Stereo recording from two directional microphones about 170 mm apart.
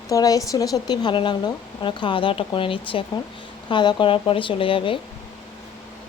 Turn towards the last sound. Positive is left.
turn(degrees=30)  # may be behind; listen again after turning